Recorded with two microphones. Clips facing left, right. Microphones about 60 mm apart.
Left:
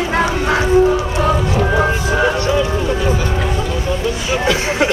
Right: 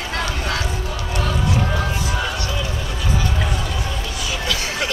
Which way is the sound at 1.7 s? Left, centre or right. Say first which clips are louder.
Left 8 dB; left.